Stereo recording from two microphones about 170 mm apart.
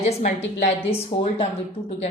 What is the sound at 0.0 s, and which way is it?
A woman's voice, 40° left (ahead or behind).